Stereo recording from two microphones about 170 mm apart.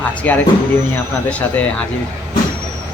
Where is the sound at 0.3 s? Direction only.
10° left (ahead or behind).